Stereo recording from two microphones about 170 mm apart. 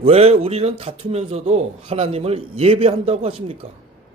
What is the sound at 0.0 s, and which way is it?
A man's voice, 35° right (ahead or behind).